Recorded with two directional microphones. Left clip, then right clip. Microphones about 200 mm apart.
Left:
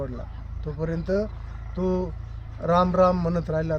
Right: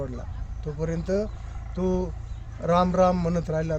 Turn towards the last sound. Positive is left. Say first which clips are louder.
# left 1 dB
turn(degrees=-10)  # may be behind; listen again after turning